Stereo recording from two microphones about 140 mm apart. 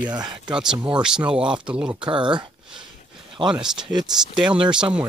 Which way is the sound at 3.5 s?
5° right (ahead or behind).